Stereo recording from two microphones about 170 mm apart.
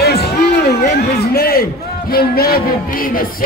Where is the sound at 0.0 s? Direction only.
70° left (ahead or behind).